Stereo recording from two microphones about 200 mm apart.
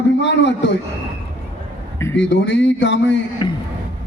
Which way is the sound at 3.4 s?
20° left (ahead or behind).